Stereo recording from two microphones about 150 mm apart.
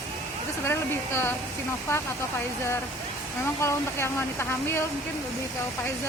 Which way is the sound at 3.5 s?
15° left (ahead or behind).